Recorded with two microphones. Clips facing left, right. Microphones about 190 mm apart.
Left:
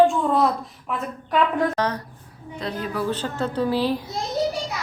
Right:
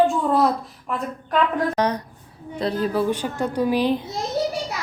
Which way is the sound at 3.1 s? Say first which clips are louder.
Right 2 dB; 15° right (ahead or behind).